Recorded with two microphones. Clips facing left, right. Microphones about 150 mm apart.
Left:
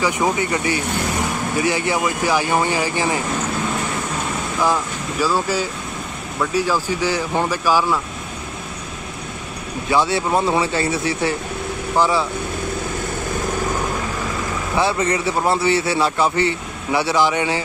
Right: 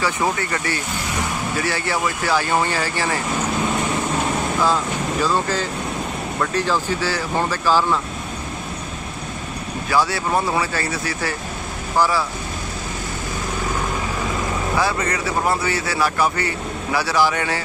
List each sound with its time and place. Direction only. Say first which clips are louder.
0.0 s speech: left 2 dB; 15° left (ahead or behind)
5.2 s speech: left 3 dB; 10° left (ahead or behind)
9.8 s a man's voice: left 2 dB; 25° left (ahead or behind)
14.8 s a man's voice: left 5 dB; 25° left (ahead or behind)